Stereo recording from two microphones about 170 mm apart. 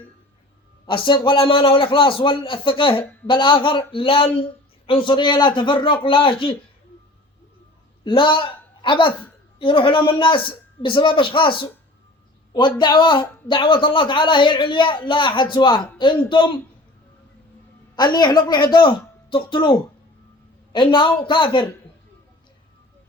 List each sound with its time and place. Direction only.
0.9 s a man's voice: 30° left (ahead or behind)
8.0 s speech: 30° left (ahead or behind)
17.9 s speech: 25° left (ahead or behind)